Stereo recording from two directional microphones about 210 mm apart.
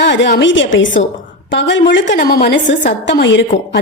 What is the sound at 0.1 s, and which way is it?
A woman's voice, 55° left (ahead or behind).